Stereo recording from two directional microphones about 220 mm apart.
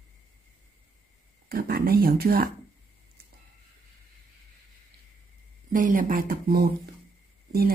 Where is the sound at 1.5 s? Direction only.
45° right (ahead or behind).